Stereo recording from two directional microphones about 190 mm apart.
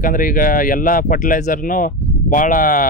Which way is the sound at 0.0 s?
45° left (ahead or behind).